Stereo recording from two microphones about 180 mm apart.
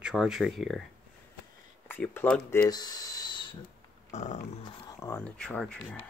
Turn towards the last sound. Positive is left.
turn(degrees=5)  # may be behind; listen again after turning